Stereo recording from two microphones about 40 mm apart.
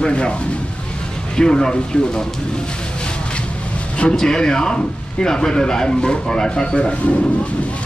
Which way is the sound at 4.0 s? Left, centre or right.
Centre.